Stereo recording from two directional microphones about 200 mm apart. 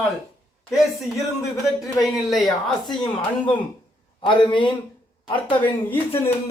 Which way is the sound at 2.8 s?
20° left (ahead or behind).